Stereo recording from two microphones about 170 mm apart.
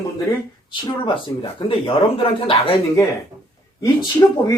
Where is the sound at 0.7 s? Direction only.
30° left (ahead or behind).